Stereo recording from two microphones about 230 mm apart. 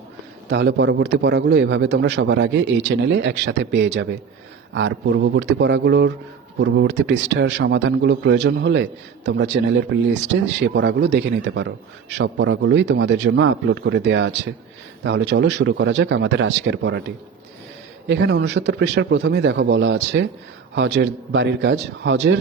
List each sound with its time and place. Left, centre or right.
0.5 s a man's voice: right
18.1 s a man's voice: right